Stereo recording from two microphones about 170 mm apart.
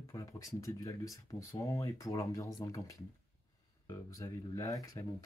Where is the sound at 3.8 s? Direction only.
20° left (ahead or behind).